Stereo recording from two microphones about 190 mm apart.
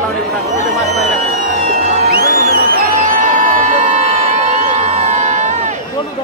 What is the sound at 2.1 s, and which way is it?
Music, 50° right (ahead or behind).